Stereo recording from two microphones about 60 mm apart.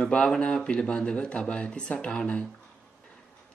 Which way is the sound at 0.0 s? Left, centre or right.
Centre.